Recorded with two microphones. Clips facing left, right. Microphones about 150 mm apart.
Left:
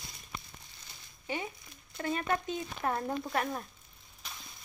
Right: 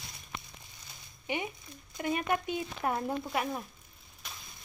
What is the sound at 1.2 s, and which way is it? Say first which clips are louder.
Speech: right 2 dB; 15° right (ahead or behind).